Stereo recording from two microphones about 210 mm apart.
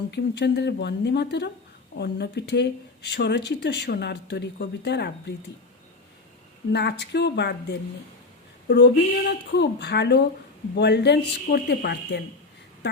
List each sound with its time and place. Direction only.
0.1 s speech: 55° left (ahead or behind)
6.7 s speech: 55° left (ahead or behind)